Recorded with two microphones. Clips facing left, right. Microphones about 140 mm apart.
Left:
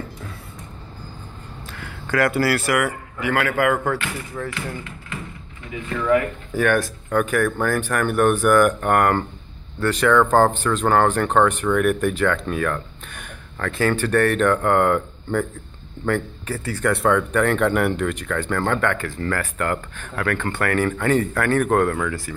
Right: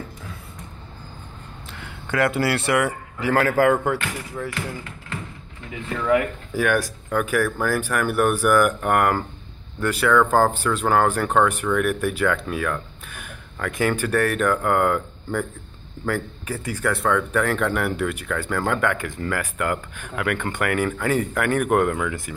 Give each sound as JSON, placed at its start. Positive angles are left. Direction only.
{"t": 1.7, "sound": "speech", "side_deg": -20}
{"t": 3.8, "sound": "speech", "side_deg": -15}
{"t": 6.0, "sound": "speech", "side_deg": -10}
{"t": 16.8, "sound": "speech", "side_deg": 0}